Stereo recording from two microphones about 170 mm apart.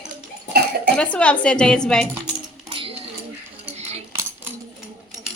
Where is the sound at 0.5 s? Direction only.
70° right (ahead or behind).